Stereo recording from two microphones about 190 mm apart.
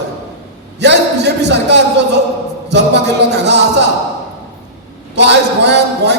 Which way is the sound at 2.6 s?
65° right (ahead or behind).